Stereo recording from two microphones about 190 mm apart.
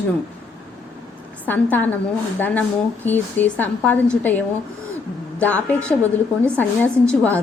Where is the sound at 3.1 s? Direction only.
10° left (ahead or behind).